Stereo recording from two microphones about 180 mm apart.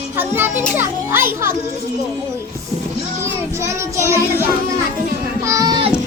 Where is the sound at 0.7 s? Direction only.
10° right (ahead or behind).